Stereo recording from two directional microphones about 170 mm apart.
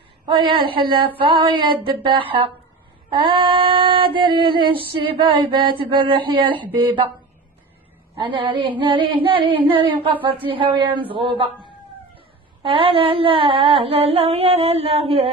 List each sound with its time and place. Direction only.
0.2 s female singing: 30° right (ahead or behind)
8.2 s female singing: 30° right (ahead or behind)
12.6 s female singing: 30° right (ahead or behind)